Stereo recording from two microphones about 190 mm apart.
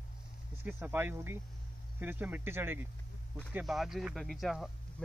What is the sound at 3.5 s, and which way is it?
Speech, centre (ahead or behind).